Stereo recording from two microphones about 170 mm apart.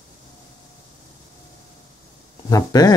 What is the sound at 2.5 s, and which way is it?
Speech, 20° left (ahead or behind).